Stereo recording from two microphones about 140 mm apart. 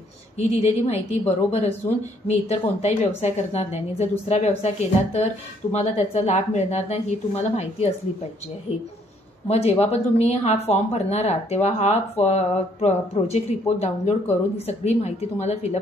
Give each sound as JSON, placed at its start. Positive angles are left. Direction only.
{"t": 0.4, "sound": "speech", "side_deg": 50}
{"t": 9.5, "sound": "speech", "side_deg": 50}